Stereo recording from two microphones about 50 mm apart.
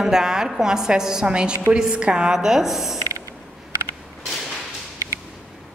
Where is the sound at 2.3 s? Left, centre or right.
Centre.